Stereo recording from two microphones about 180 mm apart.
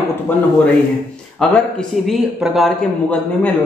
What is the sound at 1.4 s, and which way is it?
Speech, 5° left (ahead or behind).